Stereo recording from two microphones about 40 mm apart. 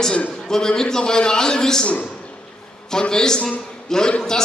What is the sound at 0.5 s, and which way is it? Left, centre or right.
A man's voice, centre.